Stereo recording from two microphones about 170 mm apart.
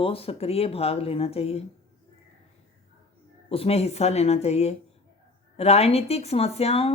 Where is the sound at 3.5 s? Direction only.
35° left (ahead or behind).